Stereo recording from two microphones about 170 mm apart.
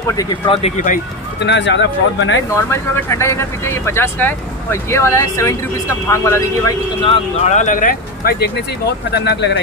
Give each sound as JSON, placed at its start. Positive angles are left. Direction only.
{"t": 0.1, "sound": "speech", "side_deg": 25}
{"t": 0.6, "sound": "speech", "side_deg": 40}
{"t": 1.4, "sound": "speech", "side_deg": 90}
{"t": 2.5, "sound": "speech", "side_deg": 15}
{"t": 7.0, "sound": "speech", "side_deg": 30}
{"t": 7.5, "sound": "speech", "side_deg": 50}
{"t": 9.1, "sound": "speech", "side_deg": 80}